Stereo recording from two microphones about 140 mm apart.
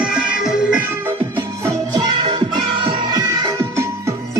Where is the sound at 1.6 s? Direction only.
25° right (ahead or behind).